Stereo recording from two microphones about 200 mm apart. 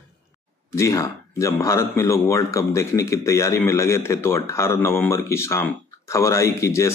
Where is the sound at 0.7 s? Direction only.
15° left (ahead or behind).